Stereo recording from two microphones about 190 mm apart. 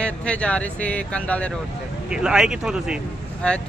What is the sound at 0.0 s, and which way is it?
Speech, 5° left (ahead or behind).